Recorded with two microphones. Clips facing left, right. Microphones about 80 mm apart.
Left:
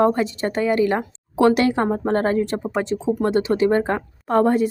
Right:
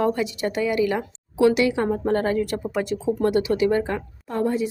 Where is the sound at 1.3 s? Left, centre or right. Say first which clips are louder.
Left 2 dB; left.